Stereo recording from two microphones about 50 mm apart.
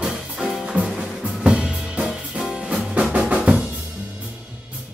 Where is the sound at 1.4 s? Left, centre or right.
Centre.